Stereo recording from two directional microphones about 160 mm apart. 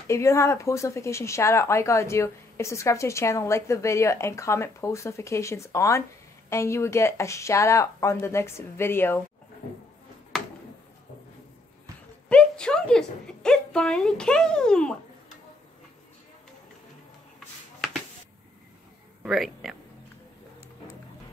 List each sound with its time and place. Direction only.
0.1 s speech: 15° left (ahead or behind)
10.3 s a sound: centre (ahead or behind)
12.3 s speech: 5° left (ahead or behind)
19.2 s speech: centre (ahead or behind)